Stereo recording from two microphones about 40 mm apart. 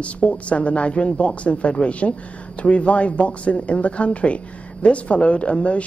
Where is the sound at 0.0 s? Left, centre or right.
Left.